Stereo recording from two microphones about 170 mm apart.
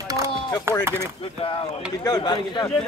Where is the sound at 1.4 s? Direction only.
35° left (ahead or behind).